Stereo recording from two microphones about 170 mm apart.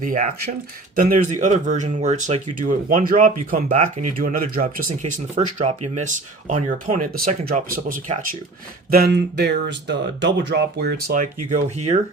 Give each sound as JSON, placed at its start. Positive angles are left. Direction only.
{"t": 0.0, "sound": "speech", "side_deg": -50}
{"t": 5.5, "sound": "speech", "side_deg": -40}
{"t": 7.1, "sound": "speech", "side_deg": -60}
{"t": 8.9, "sound": "speech", "side_deg": -65}